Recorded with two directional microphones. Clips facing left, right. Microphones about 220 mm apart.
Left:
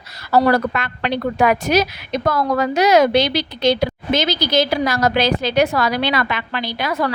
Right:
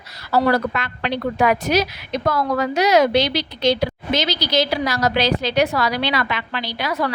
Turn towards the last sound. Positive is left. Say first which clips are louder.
# left 2 dB
turn(degrees=50)  # may be behind; listen again after turning